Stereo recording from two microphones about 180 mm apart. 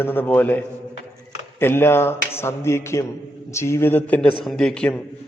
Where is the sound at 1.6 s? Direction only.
15° left (ahead or behind).